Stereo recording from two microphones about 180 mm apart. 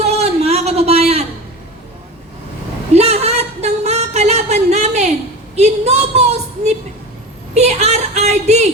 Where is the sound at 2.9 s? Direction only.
35° right (ahead or behind).